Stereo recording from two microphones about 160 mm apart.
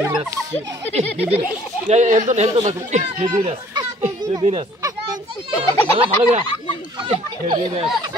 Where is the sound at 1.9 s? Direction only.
50° right (ahead or behind).